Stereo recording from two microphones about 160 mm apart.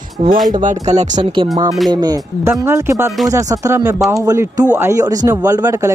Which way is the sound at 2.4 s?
15° right (ahead or behind).